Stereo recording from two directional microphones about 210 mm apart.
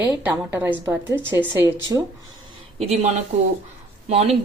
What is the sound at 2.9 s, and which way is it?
Speech, 30° right (ahead or behind).